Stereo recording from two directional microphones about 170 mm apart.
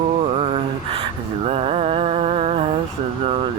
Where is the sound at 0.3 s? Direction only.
35° right (ahead or behind).